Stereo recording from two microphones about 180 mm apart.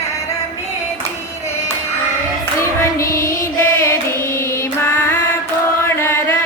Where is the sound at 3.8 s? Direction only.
15° left (ahead or behind).